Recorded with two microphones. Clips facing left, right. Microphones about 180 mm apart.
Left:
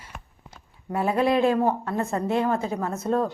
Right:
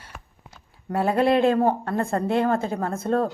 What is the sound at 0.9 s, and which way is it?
A woman's voice, 60° right (ahead or behind).